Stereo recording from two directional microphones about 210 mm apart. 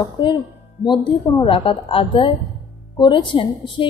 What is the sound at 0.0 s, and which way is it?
A woman's voice, 25° left (ahead or behind).